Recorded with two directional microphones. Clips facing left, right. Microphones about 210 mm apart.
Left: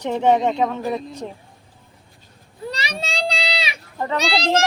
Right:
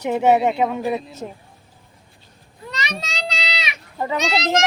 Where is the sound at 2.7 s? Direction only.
30° left (ahead or behind).